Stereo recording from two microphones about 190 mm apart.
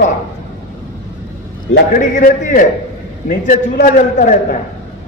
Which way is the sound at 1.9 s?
45° left (ahead or behind).